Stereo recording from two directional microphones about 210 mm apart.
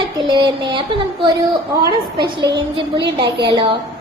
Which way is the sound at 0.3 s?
20° right (ahead or behind).